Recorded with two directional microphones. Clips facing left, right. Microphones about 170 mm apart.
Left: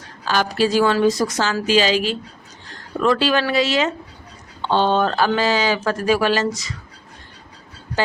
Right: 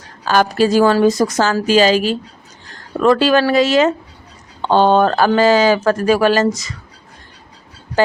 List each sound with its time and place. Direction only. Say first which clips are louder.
0.3 s speech: right 5 dB; 45° right (ahead or behind)